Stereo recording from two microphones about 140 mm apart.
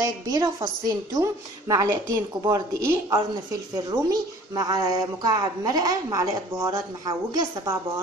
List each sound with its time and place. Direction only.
0.0 s a woman's voice: 25° right (ahead or behind)